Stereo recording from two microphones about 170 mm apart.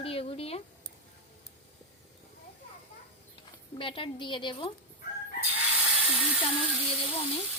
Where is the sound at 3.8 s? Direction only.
30° left (ahead or behind).